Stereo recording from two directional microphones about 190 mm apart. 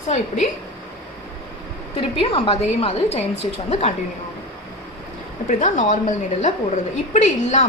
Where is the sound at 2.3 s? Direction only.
30° left (ahead or behind).